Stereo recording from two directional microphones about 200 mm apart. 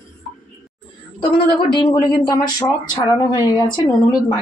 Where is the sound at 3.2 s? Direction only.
20° left (ahead or behind).